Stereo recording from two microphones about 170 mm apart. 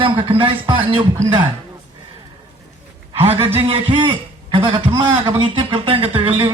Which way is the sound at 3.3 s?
15° right (ahead or behind).